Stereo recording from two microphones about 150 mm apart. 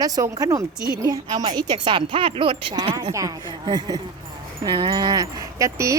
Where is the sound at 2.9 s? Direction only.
20° right (ahead or behind).